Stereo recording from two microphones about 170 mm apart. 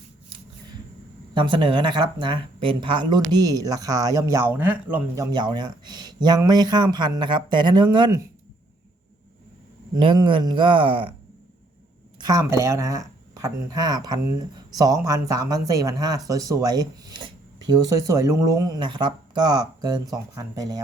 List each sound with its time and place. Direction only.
1.3 s speech: 30° right (ahead or behind)
9.9 s speech: 30° right (ahead or behind)
12.2 s speech: 20° right (ahead or behind)